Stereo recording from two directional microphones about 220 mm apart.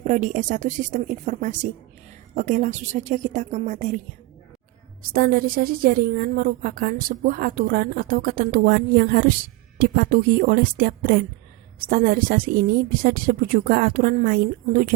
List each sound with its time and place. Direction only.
0.0 s a woman's voice: 35° right (ahead or behind)
5.1 s a woman's voice: 40° right (ahead or behind)